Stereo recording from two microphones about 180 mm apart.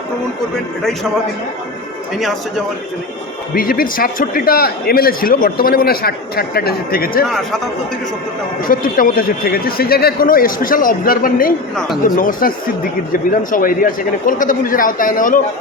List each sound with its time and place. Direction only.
3.5 s a man's voice: 55° left (ahead or behind)
8.6 s a man's voice: 50° left (ahead or behind)